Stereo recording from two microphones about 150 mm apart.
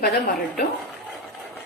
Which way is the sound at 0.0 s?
90° left.